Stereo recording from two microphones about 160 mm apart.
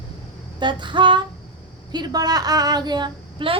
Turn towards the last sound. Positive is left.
turn(degrees=-30)  # may be behind; listen again after turning